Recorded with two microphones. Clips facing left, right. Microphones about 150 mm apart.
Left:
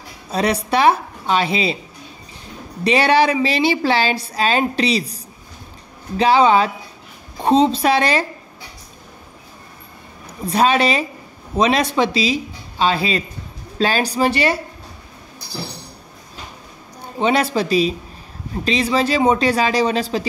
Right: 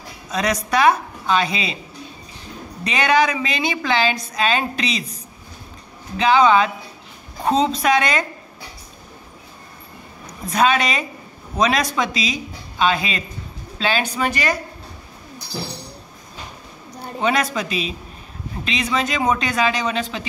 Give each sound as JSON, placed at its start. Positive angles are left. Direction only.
{"t": 0.3, "sound": "a woman's voice", "side_deg": 30}
{"t": 2.8, "sound": "a woman's voice", "side_deg": 35}
{"t": 10.4, "sound": "a woman's voice", "side_deg": 30}
{"t": 17.2, "sound": "a woman's voice", "side_deg": 30}